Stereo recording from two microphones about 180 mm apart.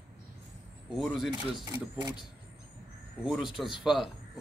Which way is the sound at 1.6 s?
25° right (ahead or behind).